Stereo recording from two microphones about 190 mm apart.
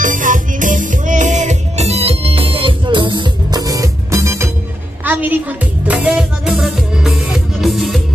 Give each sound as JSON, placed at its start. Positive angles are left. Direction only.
{"t": 0.0, "sound": "music", "side_deg": -45}